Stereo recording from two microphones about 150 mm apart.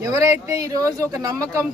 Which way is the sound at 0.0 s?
20° right (ahead or behind).